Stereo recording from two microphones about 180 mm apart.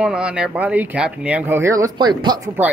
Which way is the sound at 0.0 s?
5° right (ahead or behind).